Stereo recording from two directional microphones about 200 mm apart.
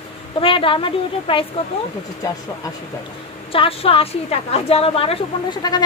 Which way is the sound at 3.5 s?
30° left (ahead or behind).